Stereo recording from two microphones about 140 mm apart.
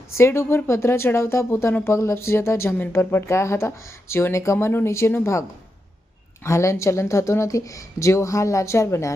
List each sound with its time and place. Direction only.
0.2 s speech: 20° left (ahead or behind)